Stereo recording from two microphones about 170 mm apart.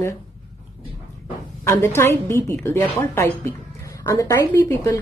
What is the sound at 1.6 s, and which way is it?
Speech, 15° left (ahead or behind).